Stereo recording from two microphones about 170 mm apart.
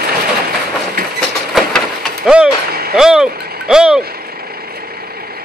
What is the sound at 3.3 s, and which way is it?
Vehicle, 65° right (ahead or behind).